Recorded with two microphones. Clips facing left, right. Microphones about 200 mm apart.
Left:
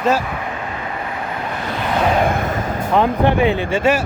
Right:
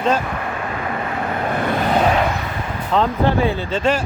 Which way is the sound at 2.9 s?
15° left (ahead or behind).